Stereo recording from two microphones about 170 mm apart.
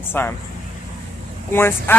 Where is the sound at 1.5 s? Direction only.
15° left (ahead or behind).